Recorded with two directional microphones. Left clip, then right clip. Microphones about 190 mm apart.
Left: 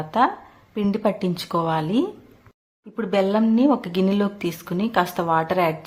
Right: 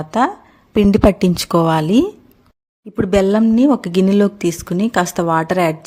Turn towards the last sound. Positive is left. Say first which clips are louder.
# right 4 dB
turn(degrees=-45)  # may be behind; listen again after turning